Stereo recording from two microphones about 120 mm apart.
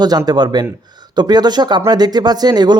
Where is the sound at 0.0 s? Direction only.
35° right (ahead or behind).